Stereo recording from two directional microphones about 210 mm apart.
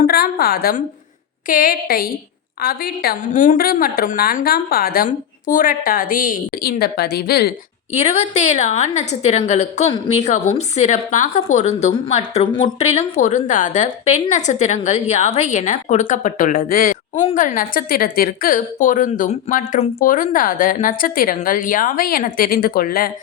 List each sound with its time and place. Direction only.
0.0 s a woman's voice: 45° left (ahead or behind)
7.9 s a woman's voice: 30° left (ahead or behind)